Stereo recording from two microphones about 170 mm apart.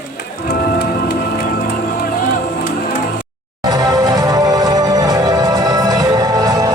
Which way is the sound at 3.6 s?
25° right (ahead or behind).